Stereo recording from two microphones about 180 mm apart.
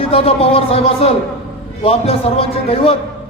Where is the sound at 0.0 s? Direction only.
30° left (ahead or behind).